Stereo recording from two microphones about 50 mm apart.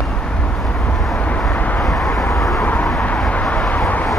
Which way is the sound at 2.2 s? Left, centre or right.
Left.